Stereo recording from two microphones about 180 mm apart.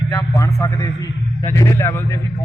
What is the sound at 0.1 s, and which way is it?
A man's voice, 20° left (ahead or behind).